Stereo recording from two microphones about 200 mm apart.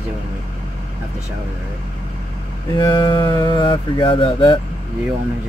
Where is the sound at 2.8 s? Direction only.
20° left (ahead or behind).